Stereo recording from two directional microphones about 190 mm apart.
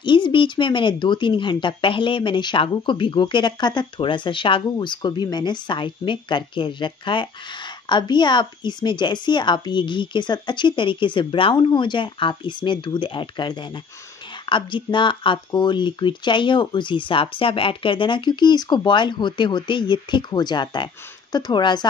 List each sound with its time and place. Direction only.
0.0 s speech: 25° left (ahead or behind)